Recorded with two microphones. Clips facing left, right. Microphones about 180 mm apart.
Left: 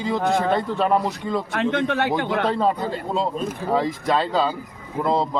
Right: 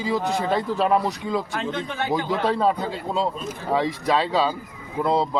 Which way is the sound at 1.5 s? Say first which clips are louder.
Left 6 dB; 70° left (ahead or behind).